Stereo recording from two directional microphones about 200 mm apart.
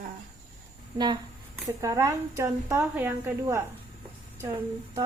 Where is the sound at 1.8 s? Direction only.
15° right (ahead or behind).